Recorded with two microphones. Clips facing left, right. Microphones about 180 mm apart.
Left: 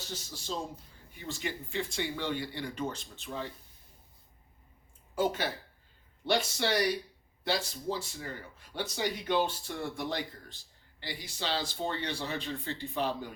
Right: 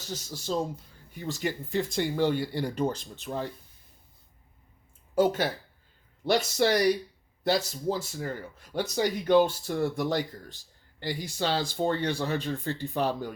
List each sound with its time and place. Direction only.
0.1 s speech: 45° right (ahead or behind)
5.1 s speech: 45° right (ahead or behind)